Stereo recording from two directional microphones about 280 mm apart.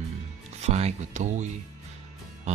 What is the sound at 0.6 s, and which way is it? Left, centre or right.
Speech, right.